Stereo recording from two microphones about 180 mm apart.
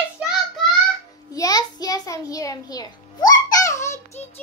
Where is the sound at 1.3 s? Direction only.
20° left (ahead or behind).